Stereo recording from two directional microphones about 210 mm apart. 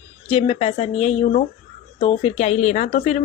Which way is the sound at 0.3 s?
25° left (ahead or behind).